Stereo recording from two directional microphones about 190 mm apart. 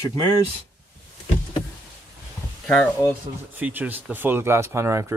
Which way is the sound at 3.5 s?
10° right (ahead or behind).